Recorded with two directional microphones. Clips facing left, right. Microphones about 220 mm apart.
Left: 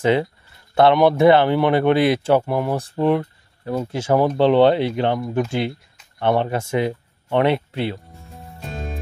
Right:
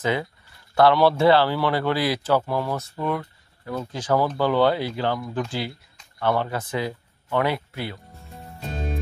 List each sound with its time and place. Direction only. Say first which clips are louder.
0.0 s speech: left 7 dB; 30° left (ahead or behind)
2.7 s speech: left 8 dB; 30° left (ahead or behind)